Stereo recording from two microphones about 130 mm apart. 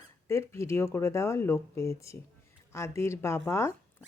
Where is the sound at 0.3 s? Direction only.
20° left (ahead or behind).